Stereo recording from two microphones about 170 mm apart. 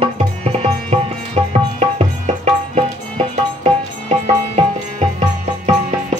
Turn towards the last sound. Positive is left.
turn(degrees=-40)  # may be behind; listen again after turning